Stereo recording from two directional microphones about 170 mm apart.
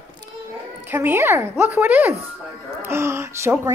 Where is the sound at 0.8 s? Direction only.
10° right (ahead or behind).